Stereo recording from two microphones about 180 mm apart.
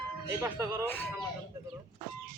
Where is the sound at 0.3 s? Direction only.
15° right (ahead or behind).